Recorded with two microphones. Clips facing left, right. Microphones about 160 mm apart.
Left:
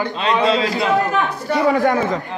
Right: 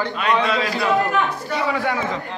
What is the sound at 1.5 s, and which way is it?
Speech, 40° left (ahead or behind).